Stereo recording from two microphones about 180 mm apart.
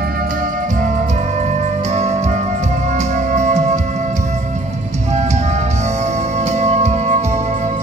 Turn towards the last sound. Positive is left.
turn(degrees=-40)  # may be behind; listen again after turning